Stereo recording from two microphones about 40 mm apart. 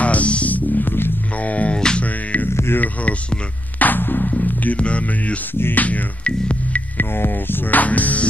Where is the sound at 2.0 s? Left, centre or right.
Left.